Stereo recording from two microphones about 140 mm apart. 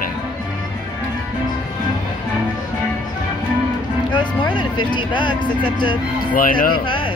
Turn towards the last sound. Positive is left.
turn(degrees=90)